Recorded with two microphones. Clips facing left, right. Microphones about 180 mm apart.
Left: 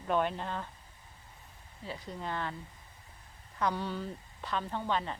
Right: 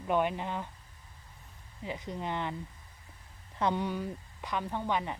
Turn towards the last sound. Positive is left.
turn(degrees=-15)  # may be behind; listen again after turning